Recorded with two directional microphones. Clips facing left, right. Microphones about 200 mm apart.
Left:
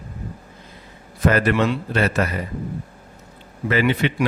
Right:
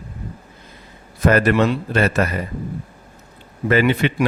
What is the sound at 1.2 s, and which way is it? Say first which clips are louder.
A man's voice: right 3 dB; 45° right (ahead or behind).